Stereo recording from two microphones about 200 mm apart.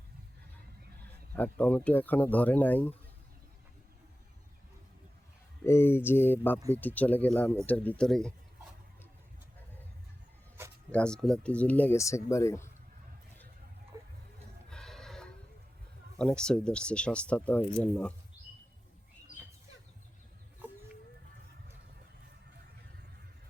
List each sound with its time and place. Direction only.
1.3 s speech: 10° left (ahead or behind)
5.6 s speech: 10° left (ahead or behind)
10.9 s speech: 5° left (ahead or behind)
13.9 s a sound: 15° right (ahead or behind)
14.7 s neigh: centre (ahead or behind)
16.1 s speech: 5° left (ahead or behind)